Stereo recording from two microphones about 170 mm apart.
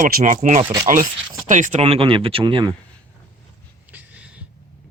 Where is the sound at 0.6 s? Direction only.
20° right (ahead or behind).